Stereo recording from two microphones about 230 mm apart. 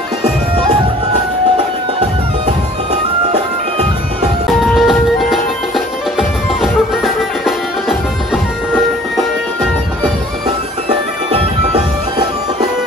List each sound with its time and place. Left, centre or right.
3.3 s music: right
4.5 s music: centre